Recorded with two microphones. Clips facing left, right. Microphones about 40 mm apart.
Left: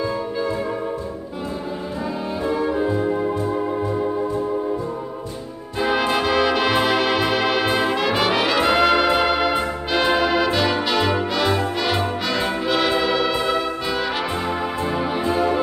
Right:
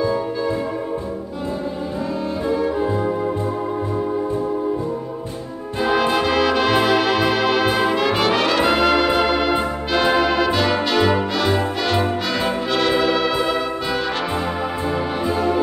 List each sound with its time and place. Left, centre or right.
2.4 s music: centre
5.8 s music: centre